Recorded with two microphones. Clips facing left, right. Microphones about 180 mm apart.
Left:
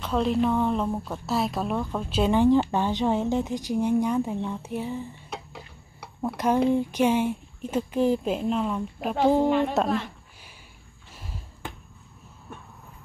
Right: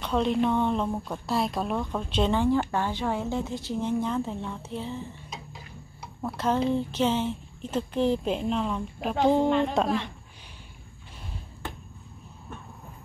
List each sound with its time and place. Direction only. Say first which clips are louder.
0.0 s a woman's voice: left 1 dB; centre (ahead or behind)
5.3 s a sound: left 3 dB; 65° left (ahead or behind)
6.2 s a woman's voice: left 3 dB; 15° left (ahead or behind)